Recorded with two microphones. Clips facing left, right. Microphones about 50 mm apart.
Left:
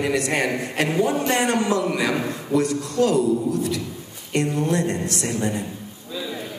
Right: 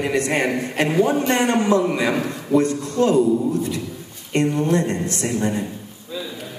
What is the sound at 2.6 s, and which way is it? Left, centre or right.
A man's voice, right.